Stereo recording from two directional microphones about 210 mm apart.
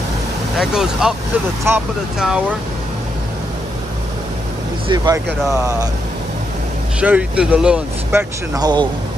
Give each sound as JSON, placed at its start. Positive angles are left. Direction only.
{"t": 0.6, "sound": "speech", "side_deg": -5}
{"t": 4.8, "sound": "speech", "side_deg": -20}
{"t": 7.0, "sound": "speech", "side_deg": -5}